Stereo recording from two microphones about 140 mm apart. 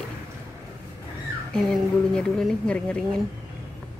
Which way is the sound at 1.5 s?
5° left (ahead or behind).